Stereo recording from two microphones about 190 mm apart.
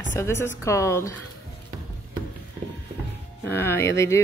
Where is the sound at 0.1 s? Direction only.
15° left (ahead or behind).